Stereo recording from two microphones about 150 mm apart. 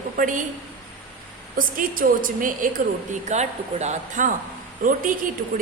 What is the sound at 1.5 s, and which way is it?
A woman's voice, 65° right (ahead or behind).